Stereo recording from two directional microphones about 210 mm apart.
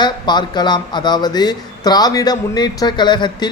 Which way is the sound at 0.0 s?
20° left (ahead or behind).